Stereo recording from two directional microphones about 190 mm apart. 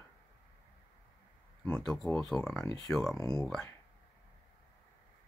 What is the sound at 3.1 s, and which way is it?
Speech, 20° left (ahead or behind).